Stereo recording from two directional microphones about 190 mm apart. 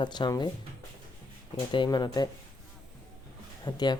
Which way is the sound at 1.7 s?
20° left (ahead or behind).